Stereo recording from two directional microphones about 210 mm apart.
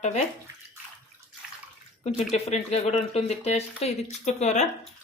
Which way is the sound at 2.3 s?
30° left (ahead or behind).